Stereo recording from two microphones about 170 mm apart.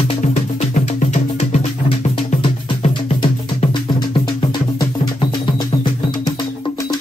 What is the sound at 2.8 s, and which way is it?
Music, 40° left (ahead or behind).